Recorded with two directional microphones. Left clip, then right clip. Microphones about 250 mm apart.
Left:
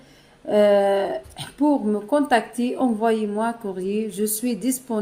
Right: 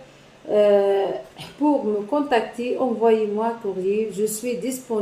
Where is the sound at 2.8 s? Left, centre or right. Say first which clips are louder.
Right 3 dB; left.